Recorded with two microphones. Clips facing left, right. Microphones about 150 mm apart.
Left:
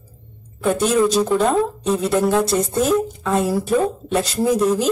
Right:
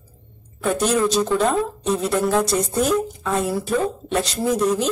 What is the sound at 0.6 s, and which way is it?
Speech, centre (ahead or behind).